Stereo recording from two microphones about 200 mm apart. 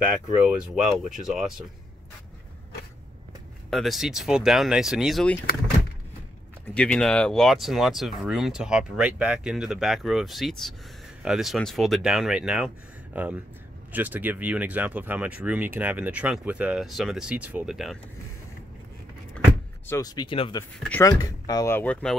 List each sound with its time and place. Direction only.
0.5 s speech: 5° right (ahead or behind)
3.7 s speech: centre (ahead or behind)
6.7 s speech: 5° left (ahead or behind)
19.9 s speech: 20° left (ahead or behind)